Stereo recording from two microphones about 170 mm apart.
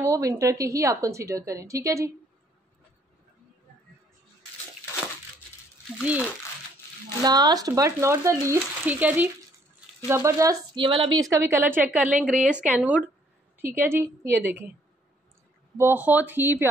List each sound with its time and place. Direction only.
0.0 s a woman's voice: 20° right (ahead or behind)
5.9 s a woman's voice: 10° right (ahead or behind)
7.2 s a woman's voice: 25° right (ahead or behind)
15.8 s a woman's voice: 10° right (ahead or behind)